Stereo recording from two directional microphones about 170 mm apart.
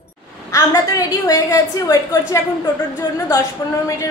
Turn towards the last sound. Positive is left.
turn(degrees=20)  # may be behind; listen again after turning